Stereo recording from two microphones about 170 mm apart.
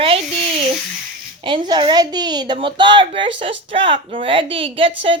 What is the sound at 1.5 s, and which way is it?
A woman's voice, 25° right (ahead or behind).